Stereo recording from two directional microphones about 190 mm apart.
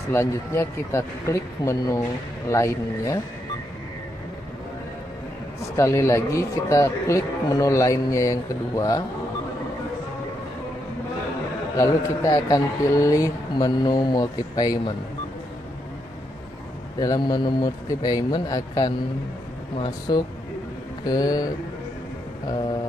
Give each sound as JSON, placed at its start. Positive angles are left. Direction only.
{"t": 0.1, "sound": "a man's voice", "side_deg": 15}
{"t": 5.8, "sound": "a man's voice", "side_deg": 15}
{"t": 11.7, "sound": "speech", "side_deg": 15}
{"t": 17.0, "sound": "speech", "side_deg": 20}